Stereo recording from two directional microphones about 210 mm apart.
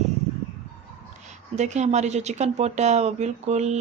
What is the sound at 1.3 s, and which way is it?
Speech, 35° right (ahead or behind).